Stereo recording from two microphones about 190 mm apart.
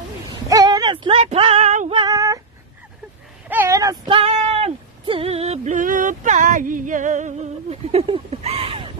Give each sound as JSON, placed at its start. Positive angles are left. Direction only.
{"t": 0.5, "sound": "female singing", "side_deg": -20}
{"t": 3.4, "sound": "female singing", "side_deg": -10}